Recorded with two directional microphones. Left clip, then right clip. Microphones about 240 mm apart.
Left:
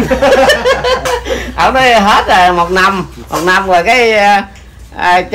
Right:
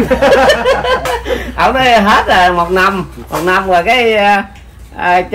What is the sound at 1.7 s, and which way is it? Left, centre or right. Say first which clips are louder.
Speech: left 1 dB; centre.